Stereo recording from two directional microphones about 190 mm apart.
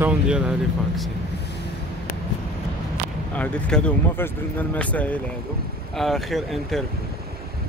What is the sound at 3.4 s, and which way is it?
Speech, 5° left (ahead or behind).